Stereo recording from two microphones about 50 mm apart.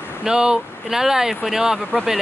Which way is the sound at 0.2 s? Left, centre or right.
Centre.